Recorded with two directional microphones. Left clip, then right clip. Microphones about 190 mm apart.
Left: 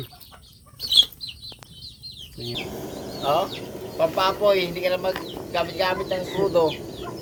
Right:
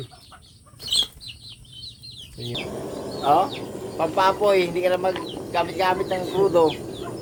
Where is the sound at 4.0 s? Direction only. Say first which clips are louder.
Right 1 dB; 55° right (ahead or behind).